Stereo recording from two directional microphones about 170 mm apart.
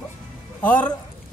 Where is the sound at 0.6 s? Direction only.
10° left (ahead or behind).